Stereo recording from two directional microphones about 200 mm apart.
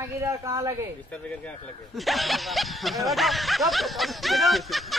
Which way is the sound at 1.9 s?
Centre (ahead or behind).